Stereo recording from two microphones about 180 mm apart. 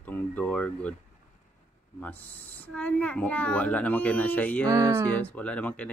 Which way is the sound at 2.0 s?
10° left (ahead or behind).